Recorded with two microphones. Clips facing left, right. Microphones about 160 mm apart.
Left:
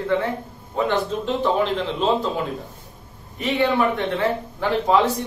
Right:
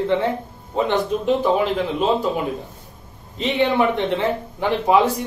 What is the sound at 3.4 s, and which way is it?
A man's voice, 20° right (ahead or behind).